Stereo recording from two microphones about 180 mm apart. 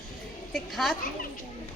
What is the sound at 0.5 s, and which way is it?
Speech, centre (ahead or behind).